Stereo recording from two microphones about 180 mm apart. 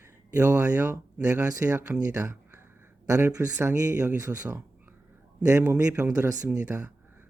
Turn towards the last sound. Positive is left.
turn(degrees=-10)  # may be behind; listen again after turning